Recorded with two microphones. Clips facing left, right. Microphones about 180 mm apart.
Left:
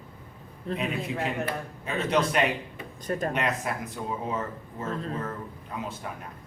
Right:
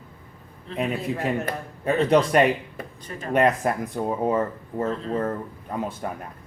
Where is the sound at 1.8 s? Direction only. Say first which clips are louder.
Right 7 dB; 50° right (ahead or behind).